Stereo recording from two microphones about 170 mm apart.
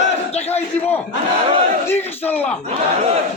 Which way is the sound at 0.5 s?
10° left (ahead or behind).